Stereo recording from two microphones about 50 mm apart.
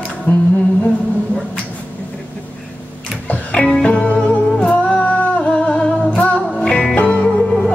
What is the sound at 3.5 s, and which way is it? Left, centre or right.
Music, left.